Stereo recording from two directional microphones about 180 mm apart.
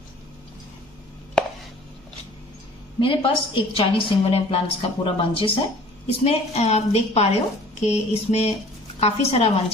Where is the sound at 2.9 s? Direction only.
30° left (ahead or behind).